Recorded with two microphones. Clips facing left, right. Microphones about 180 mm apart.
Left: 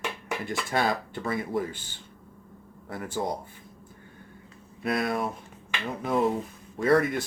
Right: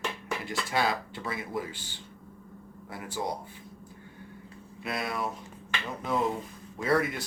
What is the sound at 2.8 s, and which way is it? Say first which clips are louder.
Speech: left 5 dB; 50° left (ahead or behind).